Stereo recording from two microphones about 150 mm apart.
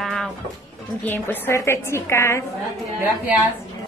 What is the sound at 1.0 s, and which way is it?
A woman's voice, 10° left (ahead or behind).